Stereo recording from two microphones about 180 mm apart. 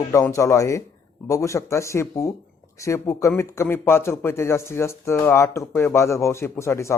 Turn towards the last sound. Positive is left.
turn(degrees=15)  # may be behind; listen again after turning